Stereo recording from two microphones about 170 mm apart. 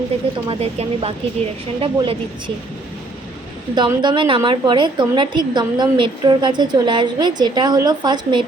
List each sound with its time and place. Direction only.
0.4 s speech: 35° right (ahead or behind)
3.8 s a woman's voice: 25° right (ahead or behind)